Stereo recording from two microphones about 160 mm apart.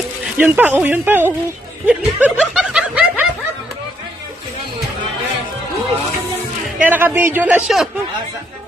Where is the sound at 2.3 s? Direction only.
5° right (ahead or behind).